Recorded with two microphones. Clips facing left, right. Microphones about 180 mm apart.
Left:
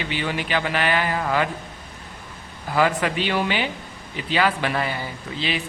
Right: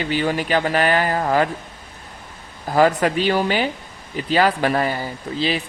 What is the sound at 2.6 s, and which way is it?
Speech, 40° right (ahead or behind).